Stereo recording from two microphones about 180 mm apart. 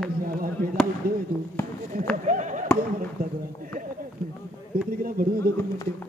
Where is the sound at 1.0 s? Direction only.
55° right (ahead or behind).